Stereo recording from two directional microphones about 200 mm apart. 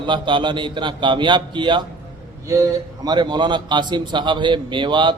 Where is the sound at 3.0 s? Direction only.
20° right (ahead or behind).